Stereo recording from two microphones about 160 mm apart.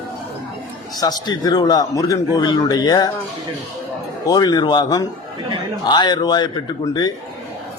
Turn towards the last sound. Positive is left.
turn(degrees=25)  # may be behind; listen again after turning